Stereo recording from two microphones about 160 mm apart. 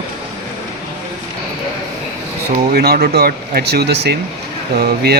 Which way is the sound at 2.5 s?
85° right.